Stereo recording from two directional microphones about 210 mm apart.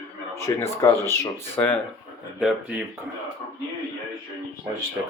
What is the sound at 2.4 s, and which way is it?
Speech, centre (ahead or behind).